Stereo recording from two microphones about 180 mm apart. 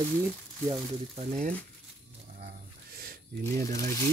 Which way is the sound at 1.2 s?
40° right (ahead or behind).